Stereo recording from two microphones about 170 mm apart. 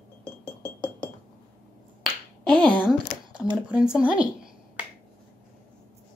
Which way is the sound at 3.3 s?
25° right (ahead or behind).